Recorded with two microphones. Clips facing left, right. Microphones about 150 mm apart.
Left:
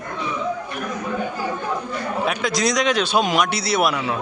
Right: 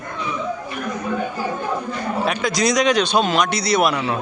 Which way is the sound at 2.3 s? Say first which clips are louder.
Right 2 dB; centre (ahead or behind).